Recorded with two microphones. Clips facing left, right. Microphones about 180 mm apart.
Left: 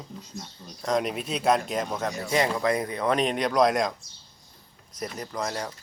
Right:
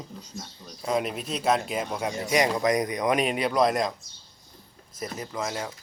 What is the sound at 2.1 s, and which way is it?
Speech, 20° right (ahead or behind).